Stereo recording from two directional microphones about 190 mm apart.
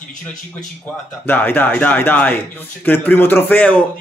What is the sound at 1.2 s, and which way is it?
A man's voice, 10° left (ahead or behind).